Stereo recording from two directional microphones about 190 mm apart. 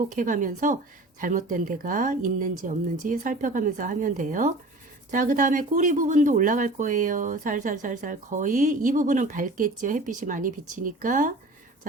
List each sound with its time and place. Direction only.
0.1 s speech: 40° right (ahead or behind)